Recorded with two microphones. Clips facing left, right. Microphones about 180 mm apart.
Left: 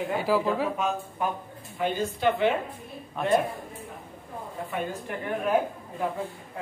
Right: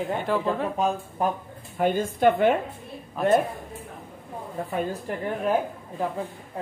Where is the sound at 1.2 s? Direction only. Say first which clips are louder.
Right 4 dB; 35° right (ahead or behind).